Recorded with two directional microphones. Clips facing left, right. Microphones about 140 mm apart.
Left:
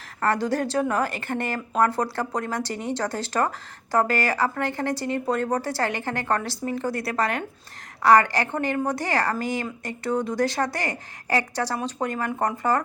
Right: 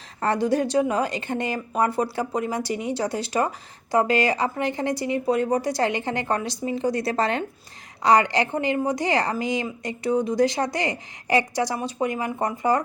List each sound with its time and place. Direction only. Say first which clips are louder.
0.2 s a woman's voice: right 2 dB; 15° right (ahead or behind)